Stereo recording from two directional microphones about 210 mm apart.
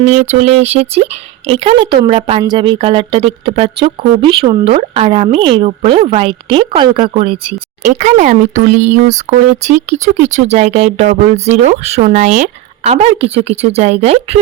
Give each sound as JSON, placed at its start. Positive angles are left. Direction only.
{"t": 0.3, "sound": "speech", "side_deg": -30}
{"t": 7.9, "sound": "speech", "side_deg": -35}